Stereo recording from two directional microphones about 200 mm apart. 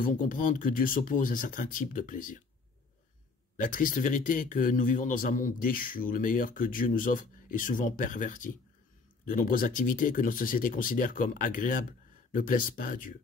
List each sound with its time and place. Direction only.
0.0 s speech: 40° left (ahead or behind)
3.5 s a man's voice: 40° left (ahead or behind)